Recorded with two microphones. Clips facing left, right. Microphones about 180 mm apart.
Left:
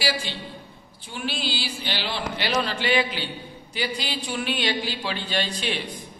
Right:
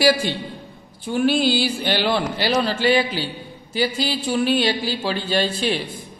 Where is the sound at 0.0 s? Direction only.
50° right (ahead or behind).